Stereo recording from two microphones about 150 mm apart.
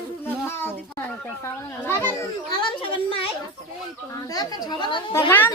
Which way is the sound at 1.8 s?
15° left (ahead or behind).